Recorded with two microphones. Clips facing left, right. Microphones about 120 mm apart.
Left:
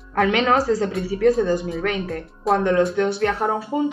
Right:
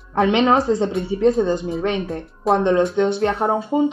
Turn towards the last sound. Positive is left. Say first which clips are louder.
# right 3 dB
turn(degrees=-20)  # may be behind; listen again after turning